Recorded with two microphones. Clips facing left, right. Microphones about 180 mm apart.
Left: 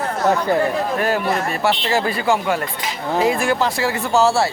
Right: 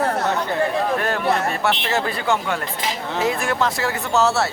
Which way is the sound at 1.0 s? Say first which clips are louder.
Left 1 dB; 5° left (ahead or behind).